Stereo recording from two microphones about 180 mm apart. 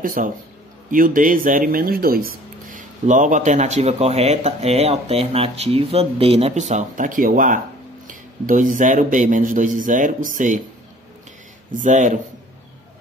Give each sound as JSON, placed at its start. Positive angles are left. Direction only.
{"t": 0.0, "sound": "speech", "side_deg": -50}
{"t": 11.7, "sound": "speech", "side_deg": -45}